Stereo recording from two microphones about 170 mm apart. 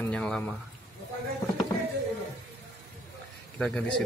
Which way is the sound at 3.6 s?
5° left (ahead or behind).